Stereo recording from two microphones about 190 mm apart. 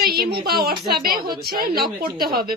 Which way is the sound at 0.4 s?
55° right (ahead or behind).